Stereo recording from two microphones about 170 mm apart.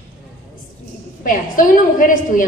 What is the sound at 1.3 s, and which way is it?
A woman's voice, 55° left (ahead or behind).